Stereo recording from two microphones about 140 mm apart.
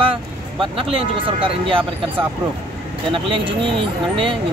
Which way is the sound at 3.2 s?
40° right (ahead or behind).